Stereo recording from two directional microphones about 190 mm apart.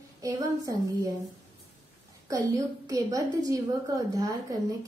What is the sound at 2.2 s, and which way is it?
A woman's voice, 20° right (ahead or behind).